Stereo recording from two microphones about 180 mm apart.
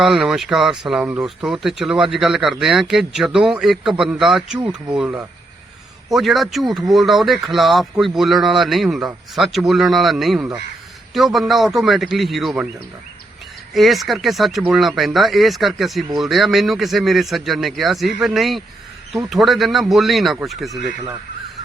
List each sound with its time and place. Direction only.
0.0 s speech: centre (ahead or behind)
13.7 s speech: centre (ahead or behind)
20.7 s speech: 20° right (ahead or behind)